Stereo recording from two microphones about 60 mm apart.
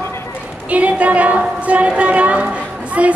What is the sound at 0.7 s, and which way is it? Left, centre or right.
A woman's voice, right.